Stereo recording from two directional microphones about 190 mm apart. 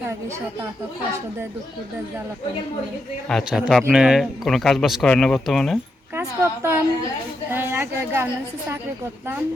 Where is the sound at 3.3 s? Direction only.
Centre (ahead or behind).